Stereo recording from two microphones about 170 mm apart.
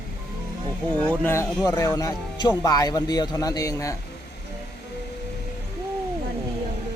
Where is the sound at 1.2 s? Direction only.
15° left (ahead or behind).